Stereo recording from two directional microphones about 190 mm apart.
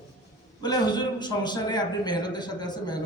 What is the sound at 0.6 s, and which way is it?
A man's voice, 20° left (ahead or behind).